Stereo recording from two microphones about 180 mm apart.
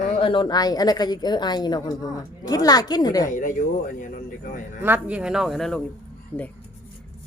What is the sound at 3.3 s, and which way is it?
Speech, 45° left (ahead or behind).